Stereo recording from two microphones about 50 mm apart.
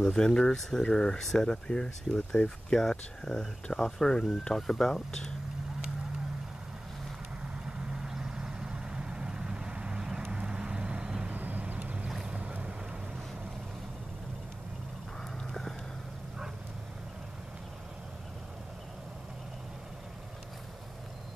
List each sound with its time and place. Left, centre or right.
0.0 s speech: centre
7.5 s vehicle: centre
11.3 s vehicle: right
11.7 s boat: right
15.3 s a sound: centre